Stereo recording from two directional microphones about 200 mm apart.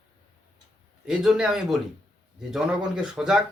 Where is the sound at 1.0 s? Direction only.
5° right (ahead or behind).